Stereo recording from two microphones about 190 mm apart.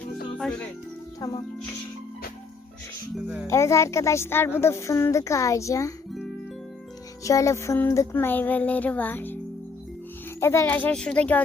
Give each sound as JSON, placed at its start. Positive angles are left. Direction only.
{"t": 0.3, "sound": "music", "side_deg": 5}
{"t": 1.2, "sound": "speech", "side_deg": 20}
{"t": 3.4, "sound": "a woman's voice", "side_deg": 15}
{"t": 7.3, "sound": "a woman's voice", "side_deg": 15}
{"t": 10.4, "sound": "a woman's voice", "side_deg": 15}